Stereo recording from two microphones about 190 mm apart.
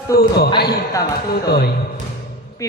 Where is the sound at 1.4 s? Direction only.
60° left (ahead or behind).